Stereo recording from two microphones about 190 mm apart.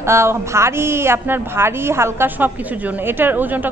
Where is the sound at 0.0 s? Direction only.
15° right (ahead or behind).